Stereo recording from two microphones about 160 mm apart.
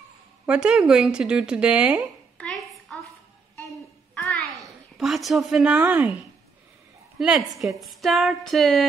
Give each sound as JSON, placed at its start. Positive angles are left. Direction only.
{"t": 0.5, "sound": "speech", "side_deg": -5}
{"t": 2.3, "sound": "a sound", "side_deg": 0}
{"t": 4.1, "sound": "babbling", "side_deg": 5}
{"t": 7.2, "sound": "a woman's voice", "side_deg": -5}